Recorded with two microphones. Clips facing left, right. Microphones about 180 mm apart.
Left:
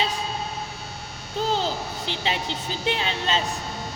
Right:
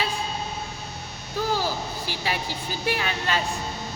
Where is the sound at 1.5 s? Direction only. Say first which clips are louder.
Left 1 dB; 25° left (ahead or behind).